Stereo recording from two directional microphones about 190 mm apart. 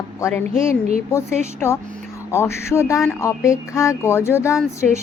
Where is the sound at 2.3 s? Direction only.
15° left (ahead or behind).